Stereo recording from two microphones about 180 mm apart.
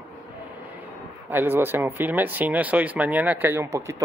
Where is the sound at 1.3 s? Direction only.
10° right (ahead or behind).